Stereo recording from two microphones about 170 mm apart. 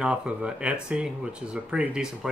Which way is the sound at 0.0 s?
5° right (ahead or behind).